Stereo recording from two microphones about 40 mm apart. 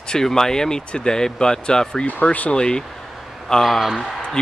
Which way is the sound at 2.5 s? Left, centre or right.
Centre.